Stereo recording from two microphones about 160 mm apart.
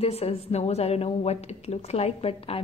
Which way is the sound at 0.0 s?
40° left (ahead or behind).